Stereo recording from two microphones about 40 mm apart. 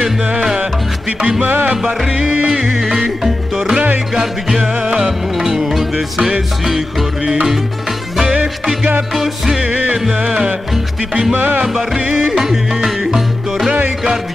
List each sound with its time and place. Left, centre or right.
0.0 s music: right
1.4 s music: right
1.8 s music: centre
2.0 s music: right
2.4 s music: right
4.6 s music: right
5.5 s music: centre
9.1 s music: centre
9.7 s music: right
11.3 s music: right
11.6 s music: centre